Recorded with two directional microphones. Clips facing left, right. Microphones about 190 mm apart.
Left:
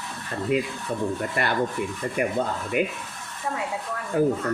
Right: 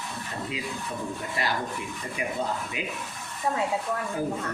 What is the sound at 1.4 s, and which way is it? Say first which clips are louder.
Speech: left 3 dB; 55° left (ahead or behind).